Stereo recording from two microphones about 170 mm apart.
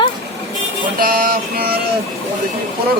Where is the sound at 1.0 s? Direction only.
60° right (ahead or behind).